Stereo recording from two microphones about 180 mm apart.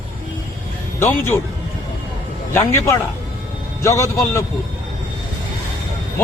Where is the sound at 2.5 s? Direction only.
15° left (ahead or behind).